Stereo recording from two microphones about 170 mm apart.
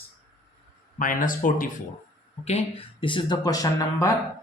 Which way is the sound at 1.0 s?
55° left (ahead or behind).